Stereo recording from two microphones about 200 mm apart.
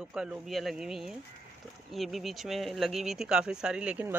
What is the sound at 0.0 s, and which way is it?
Speech, 5° right (ahead or behind).